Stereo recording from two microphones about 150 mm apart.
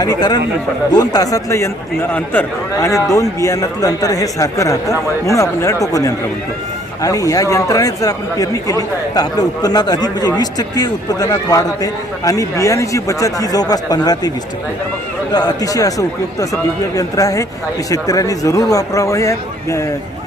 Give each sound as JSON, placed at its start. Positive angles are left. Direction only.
{"t": 0.0, "sound": "a man's voice", "side_deg": 25}